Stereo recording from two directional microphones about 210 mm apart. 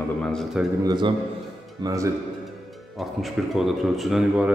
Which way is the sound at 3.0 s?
Centre (ahead or behind).